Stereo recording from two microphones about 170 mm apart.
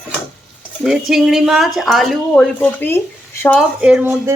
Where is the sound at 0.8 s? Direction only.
Centre (ahead or behind).